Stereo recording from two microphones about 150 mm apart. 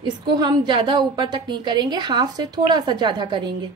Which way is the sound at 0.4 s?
30° right (ahead or behind).